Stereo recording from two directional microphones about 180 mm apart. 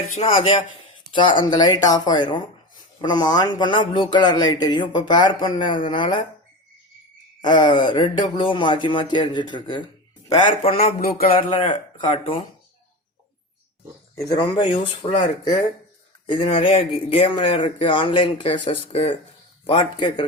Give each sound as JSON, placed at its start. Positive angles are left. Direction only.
{"t": 0.1, "sound": "a man's voice", "side_deg": 30}
{"t": 7.4, "sound": "speech", "side_deg": 25}
{"t": 11.0, "sound": "a sound", "side_deg": 55}
{"t": 11.6, "sound": "speech", "side_deg": 25}
{"t": 14.2, "sound": "speech", "side_deg": 20}